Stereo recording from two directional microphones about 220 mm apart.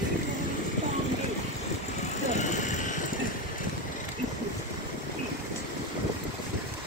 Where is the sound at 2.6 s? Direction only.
35° left (ahead or behind).